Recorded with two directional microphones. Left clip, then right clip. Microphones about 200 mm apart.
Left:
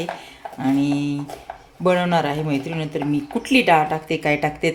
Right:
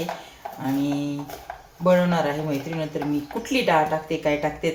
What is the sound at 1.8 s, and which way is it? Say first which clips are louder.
A woman's voice: left 1 dB; 60° left (ahead or behind).